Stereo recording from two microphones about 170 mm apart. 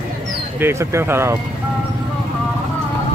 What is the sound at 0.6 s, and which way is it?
Speech, 15° right (ahead or behind).